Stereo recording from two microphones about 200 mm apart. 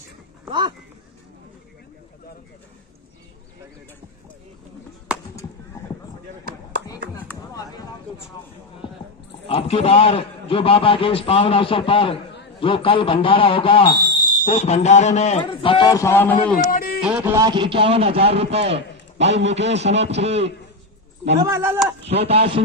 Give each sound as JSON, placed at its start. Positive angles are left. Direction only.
{"t": 0.5, "sound": "speech", "side_deg": -25}
{"t": 7.2, "sound": "chop", "side_deg": 20}
{"t": 9.5, "sound": "a man's voice", "side_deg": 30}
{"t": 14.0, "sound": "a sound", "side_deg": 20}
{"t": 14.6, "sound": "speech", "side_deg": 35}
{"t": 15.4, "sound": "a man's voice", "side_deg": 25}
{"t": 16.5, "sound": "speech", "side_deg": 45}
{"t": 17.0, "sound": "a man's voice", "side_deg": -10}
{"t": 19.2, "sound": "a man's voice", "side_deg": -60}
{"t": 19.5, "sound": "a man's voice", "side_deg": -35}
{"t": 21.4, "sound": "speech", "side_deg": -15}
{"t": 22.1, "sound": "a man's voice", "side_deg": -30}